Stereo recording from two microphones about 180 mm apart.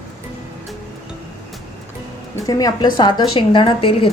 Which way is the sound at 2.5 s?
20° left (ahead or behind).